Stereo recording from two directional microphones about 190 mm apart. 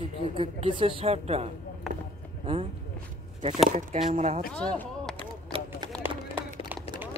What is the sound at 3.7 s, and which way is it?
Speech, 40° right (ahead or behind).